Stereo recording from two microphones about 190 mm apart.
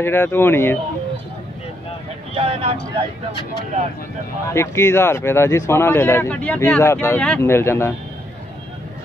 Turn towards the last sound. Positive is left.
turn(degrees=15)  # may be behind; listen again after turning